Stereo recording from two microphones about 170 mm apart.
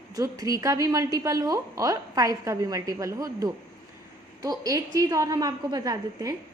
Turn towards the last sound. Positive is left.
turn(degrees=-20)  # may be behind; listen again after turning